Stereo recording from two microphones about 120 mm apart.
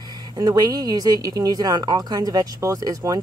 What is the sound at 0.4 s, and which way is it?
Speech, 35° right (ahead or behind).